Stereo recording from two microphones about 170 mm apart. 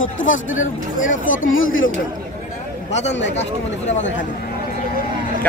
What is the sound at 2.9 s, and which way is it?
Speech, 40° left (ahead or behind).